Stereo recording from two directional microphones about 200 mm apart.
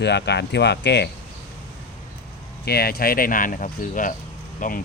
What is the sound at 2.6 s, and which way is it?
Speech, 50° left (ahead or behind).